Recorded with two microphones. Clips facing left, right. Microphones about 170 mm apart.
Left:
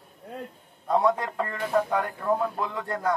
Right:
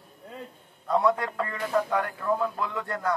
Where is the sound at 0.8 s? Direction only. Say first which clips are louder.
Left 1 dB; 20° left (ahead or behind).